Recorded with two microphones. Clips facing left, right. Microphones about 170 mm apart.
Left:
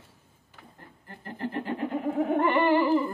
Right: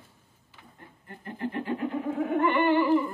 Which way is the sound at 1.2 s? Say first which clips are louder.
Even; 35° left (ahead or behind).